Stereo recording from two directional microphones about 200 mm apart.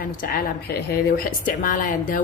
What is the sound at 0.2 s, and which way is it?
A woman's voice, 45° left (ahead or behind).